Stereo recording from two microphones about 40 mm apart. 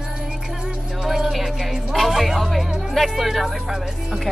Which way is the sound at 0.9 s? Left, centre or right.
Centre.